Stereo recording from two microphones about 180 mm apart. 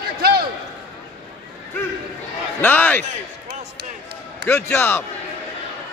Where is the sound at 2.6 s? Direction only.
10° left (ahead or behind).